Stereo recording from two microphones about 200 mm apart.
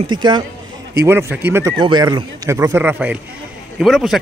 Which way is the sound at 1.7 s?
20° right (ahead or behind).